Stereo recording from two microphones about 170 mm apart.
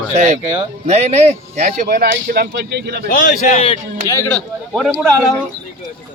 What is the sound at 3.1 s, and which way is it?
Speech, 50° left (ahead or behind).